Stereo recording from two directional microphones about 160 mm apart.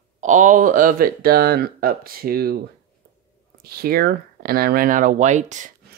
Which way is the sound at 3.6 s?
75° right (ahead or behind).